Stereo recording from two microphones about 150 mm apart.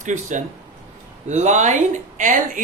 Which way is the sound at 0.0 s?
55° right (ahead or behind).